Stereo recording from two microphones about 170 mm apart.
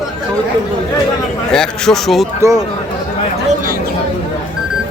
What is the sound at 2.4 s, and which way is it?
Speech, 15° right (ahead or behind).